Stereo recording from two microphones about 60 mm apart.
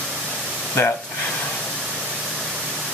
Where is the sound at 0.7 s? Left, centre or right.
Left.